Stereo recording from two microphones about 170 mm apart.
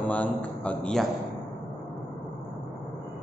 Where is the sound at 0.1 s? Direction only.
10° left (ahead or behind).